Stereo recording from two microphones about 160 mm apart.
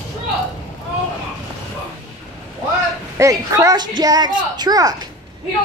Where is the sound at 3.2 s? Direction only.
20° right (ahead or behind).